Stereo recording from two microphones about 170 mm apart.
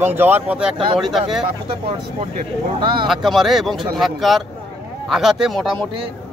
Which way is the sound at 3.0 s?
Centre (ahead or behind).